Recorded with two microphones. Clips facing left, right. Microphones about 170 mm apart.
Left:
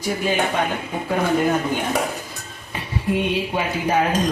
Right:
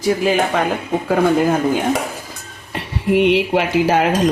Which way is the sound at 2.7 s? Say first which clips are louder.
Right 6 dB; 75° right (ahead or behind).